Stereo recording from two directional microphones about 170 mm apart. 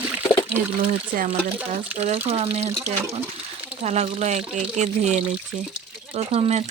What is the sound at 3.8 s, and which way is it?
Speech, 40° right (ahead or behind).